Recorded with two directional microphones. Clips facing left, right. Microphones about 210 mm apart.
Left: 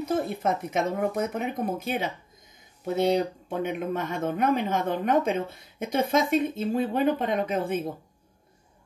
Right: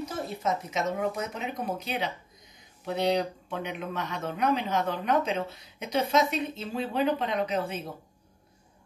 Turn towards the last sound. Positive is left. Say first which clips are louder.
# left 3 dB
turn(degrees=50)  # may be behind; listen again after turning